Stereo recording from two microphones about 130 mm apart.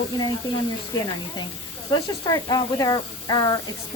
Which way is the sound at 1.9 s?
30° left (ahead or behind).